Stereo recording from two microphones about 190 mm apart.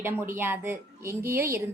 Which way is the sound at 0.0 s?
10° right (ahead or behind).